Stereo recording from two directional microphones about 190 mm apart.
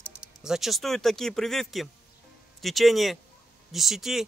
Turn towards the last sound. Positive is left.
turn(degrees=0)  # may be behind; listen again after turning